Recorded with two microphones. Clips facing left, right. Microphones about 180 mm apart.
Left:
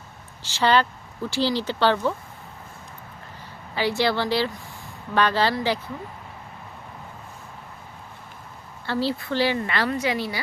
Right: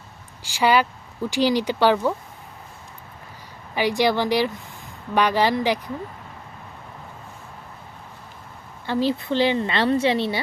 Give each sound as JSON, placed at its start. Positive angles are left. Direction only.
{"t": 0.4, "sound": "speech", "side_deg": -10}
{"t": 3.8, "sound": "speech", "side_deg": -15}
{"t": 8.9, "sound": "speech", "side_deg": -15}